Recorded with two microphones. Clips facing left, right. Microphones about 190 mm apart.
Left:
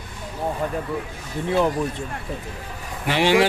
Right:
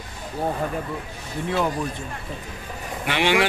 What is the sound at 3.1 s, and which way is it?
Speech, 40° left (ahead or behind).